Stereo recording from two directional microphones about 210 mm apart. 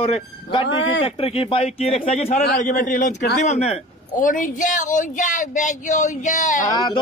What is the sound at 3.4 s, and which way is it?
A man's voice, 30° left (ahead or behind).